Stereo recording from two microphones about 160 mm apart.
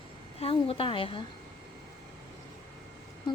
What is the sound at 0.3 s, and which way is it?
Speech, 35° left (ahead or behind).